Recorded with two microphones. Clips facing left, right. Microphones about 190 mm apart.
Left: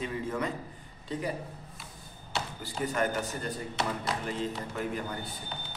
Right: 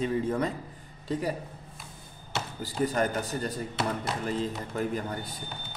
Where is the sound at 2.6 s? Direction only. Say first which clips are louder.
Right 4 dB; 35° right (ahead or behind).